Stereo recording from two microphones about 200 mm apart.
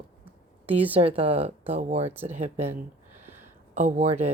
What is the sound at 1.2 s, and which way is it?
Speech, 30° right (ahead or behind).